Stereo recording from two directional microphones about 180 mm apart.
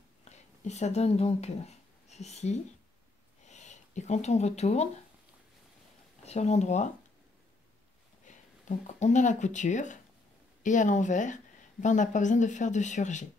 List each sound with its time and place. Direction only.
0.3 s speech: 40° left (ahead or behind)
6.2 s speech: 40° left (ahead or behind)
8.3 s a woman's voice: 45° left (ahead or behind)